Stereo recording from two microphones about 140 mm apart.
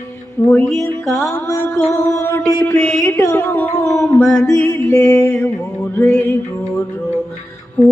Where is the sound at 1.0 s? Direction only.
Centre (ahead or behind).